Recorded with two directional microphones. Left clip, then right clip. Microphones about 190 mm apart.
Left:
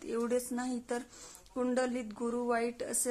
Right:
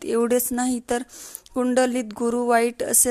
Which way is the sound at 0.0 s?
40° right (ahead or behind).